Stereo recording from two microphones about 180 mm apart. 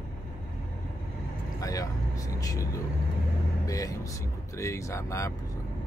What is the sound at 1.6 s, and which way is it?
Speech, 20° left (ahead or behind).